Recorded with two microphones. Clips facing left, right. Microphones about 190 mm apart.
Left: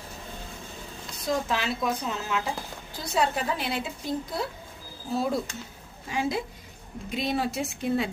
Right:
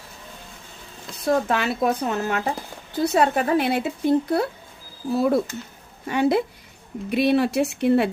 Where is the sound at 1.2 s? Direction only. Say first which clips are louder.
Right 6 dB; 60° right (ahead or behind).